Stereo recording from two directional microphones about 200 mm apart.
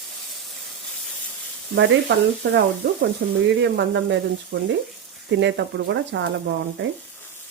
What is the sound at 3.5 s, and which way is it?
Speech, 60° right (ahead or behind).